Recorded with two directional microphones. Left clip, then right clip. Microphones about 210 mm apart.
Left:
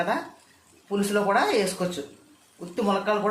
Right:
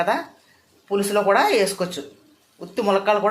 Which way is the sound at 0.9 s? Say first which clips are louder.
Right 5 dB; 15° right (ahead or behind).